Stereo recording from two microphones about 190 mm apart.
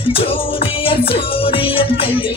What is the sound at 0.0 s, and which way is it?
Music, 30° left (ahead or behind).